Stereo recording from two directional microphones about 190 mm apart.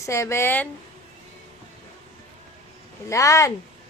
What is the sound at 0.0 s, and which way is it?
Speech, 15° left (ahead or behind).